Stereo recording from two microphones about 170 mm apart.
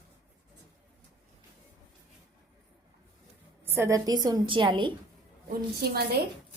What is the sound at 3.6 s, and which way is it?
A woman's voice, 15° right (ahead or behind).